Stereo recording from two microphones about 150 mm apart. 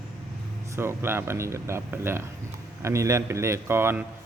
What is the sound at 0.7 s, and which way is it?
A man's voice, 15° right (ahead or behind).